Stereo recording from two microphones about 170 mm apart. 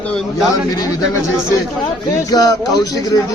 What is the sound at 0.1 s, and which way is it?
Speech, centre (ahead or behind).